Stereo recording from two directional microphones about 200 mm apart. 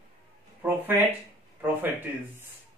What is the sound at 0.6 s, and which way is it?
Speech, 10° right (ahead or behind).